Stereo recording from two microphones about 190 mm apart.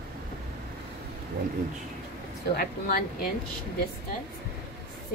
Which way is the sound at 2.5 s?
50° left (ahead or behind).